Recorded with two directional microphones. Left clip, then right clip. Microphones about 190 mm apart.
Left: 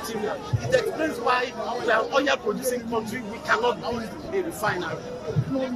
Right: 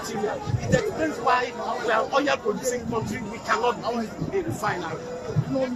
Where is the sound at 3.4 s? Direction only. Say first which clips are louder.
Left 1 dB; 10° left (ahead or behind).